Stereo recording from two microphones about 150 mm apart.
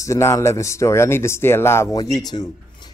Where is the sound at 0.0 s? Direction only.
20° left (ahead or behind).